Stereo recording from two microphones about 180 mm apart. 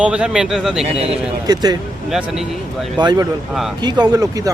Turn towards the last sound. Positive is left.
turn(degrees=-20)  # may be behind; listen again after turning